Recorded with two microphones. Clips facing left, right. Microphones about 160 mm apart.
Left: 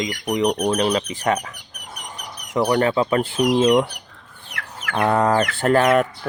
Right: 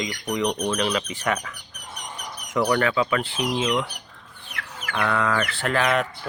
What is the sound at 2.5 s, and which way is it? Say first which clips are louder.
Speech: left 3 dB; 30° left (ahead or behind).